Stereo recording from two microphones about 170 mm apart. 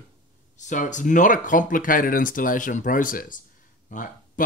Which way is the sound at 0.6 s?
45° left (ahead or behind).